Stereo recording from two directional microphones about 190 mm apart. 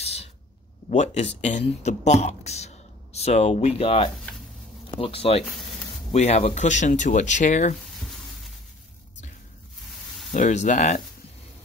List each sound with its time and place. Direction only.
0.0 s a sound: 35° left (ahead or behind)
0.8 s speech: 35° left (ahead or behind)
10.3 s speech: 40° left (ahead or behind)